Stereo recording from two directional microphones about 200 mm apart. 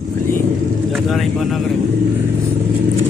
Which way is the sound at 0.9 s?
Centre (ahead or behind).